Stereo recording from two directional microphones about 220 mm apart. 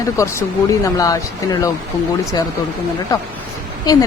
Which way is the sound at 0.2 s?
15° left (ahead or behind).